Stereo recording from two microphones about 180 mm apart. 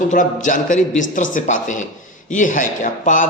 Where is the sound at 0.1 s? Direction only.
45° left (ahead or behind).